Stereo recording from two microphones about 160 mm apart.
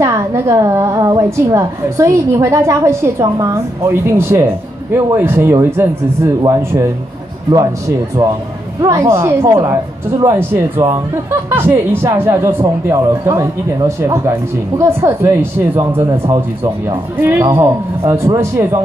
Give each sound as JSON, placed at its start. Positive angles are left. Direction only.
{"t": 0.0, "sound": "a woman's voice", "side_deg": -20}
{"t": 8.8, "sound": "a woman's voice", "side_deg": -20}